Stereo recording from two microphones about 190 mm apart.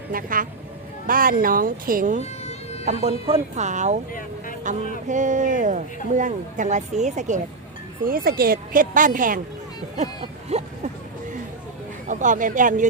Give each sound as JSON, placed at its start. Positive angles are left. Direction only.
{"t": 0.1, "sound": "a woman's voice", "side_deg": -45}
{"t": 2.8, "sound": "speech", "side_deg": -35}
{"t": 8.0, "sound": "a woman's voice", "side_deg": -50}
{"t": 10.5, "sound": "a sound", "side_deg": -35}
{"t": 12.0, "sound": "a woman's voice", "side_deg": -40}